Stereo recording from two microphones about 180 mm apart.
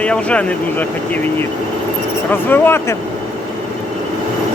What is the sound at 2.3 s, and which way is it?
Speech, 10° left (ahead or behind).